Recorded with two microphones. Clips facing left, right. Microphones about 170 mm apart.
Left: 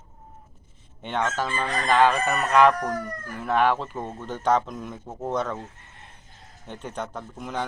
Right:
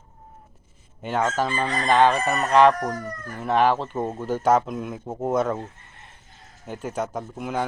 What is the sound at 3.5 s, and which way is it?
Fowl, centre (ahead or behind).